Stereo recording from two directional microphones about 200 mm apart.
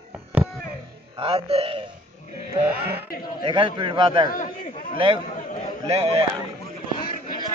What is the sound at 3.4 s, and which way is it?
Speech, 25° right (ahead or behind).